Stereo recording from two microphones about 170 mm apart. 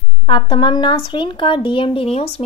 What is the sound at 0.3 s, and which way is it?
Speech, 25° left (ahead or behind).